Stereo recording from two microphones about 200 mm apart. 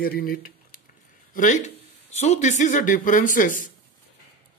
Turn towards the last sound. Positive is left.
turn(degrees=40)  # may be behind; listen again after turning